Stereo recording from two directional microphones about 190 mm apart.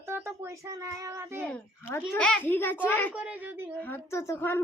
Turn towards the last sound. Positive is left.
turn(degrees=15)  # may be behind; listen again after turning